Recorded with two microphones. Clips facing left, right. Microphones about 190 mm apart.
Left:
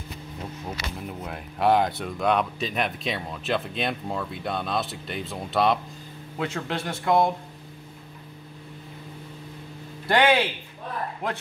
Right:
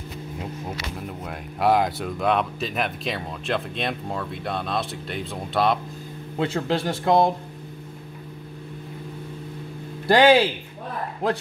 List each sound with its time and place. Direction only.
0.7 s speech: centre (ahead or behind)
6.3 s speech: 30° right (ahead or behind)
10.0 s speech: 35° right (ahead or behind)